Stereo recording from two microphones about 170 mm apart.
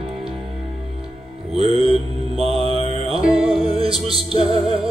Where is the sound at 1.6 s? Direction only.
35° right (ahead or behind).